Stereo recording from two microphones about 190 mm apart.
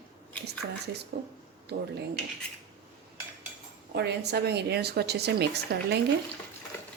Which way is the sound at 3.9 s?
60° right (ahead or behind).